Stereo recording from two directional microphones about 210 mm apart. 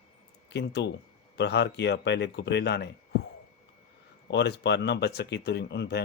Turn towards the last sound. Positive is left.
turn(degrees=50)  # may be behind; listen again after turning